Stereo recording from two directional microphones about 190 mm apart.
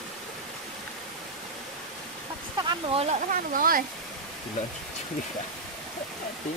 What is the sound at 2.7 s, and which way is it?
Speech, 30° right (ahead or behind).